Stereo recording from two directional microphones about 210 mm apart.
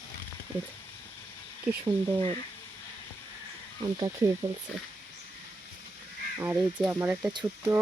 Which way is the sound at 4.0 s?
15° right (ahead or behind).